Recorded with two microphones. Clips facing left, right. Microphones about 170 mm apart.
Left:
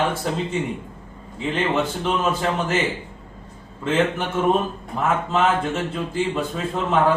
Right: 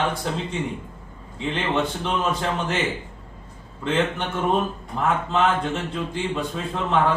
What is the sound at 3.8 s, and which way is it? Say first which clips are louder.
Speech: left 2 dB; 5° left (ahead or behind).